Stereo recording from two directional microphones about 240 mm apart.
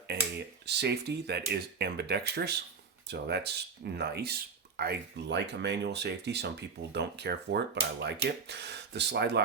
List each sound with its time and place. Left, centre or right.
0.1 s speech: right